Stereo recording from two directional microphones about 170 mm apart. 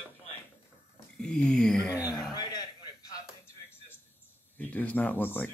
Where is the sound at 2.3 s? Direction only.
25° left (ahead or behind).